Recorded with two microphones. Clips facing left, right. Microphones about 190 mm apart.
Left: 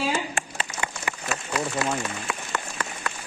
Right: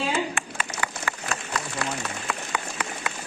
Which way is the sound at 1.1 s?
20° left (ahead or behind).